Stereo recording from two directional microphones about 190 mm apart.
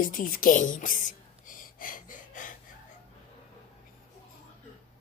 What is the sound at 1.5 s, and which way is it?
Gasp, 45° left (ahead or behind).